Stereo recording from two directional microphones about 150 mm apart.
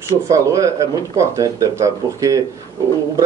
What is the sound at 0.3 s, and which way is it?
Speech, 20° right (ahead or behind).